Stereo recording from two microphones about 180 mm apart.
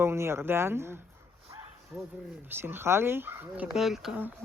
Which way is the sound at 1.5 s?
15° right (ahead or behind).